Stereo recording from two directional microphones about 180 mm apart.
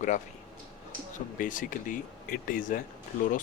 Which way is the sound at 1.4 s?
45° left (ahead or behind).